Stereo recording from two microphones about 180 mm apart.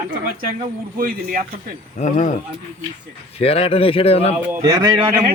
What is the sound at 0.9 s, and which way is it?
Speech, 50° right (ahead or behind).